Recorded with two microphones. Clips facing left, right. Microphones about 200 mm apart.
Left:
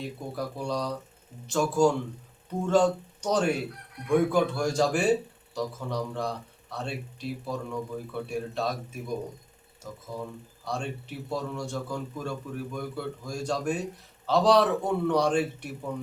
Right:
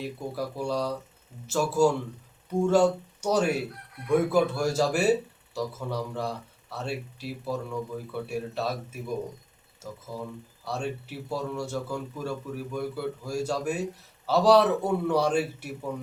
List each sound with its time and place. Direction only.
0.0 s a man's voice: 5° right (ahead or behind)